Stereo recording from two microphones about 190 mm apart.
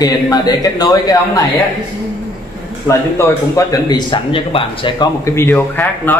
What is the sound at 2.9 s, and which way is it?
Speech, 15° left (ahead or behind).